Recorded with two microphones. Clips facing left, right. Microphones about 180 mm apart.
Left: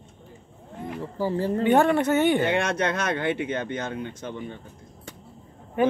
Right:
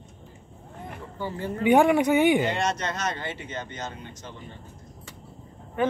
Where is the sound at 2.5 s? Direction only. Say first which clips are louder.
Left 3 dB; 60° left (ahead or behind).